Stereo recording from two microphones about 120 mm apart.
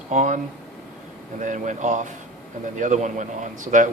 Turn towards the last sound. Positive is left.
turn(degrees=-90)